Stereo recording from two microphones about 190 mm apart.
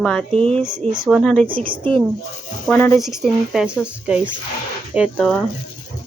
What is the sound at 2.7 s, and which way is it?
Speech, 15° left (ahead or behind).